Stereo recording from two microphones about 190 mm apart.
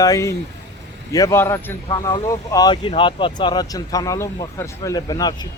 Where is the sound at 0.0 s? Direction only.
15° left (ahead or behind).